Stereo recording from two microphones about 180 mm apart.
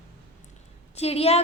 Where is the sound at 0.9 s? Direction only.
35° left (ahead or behind).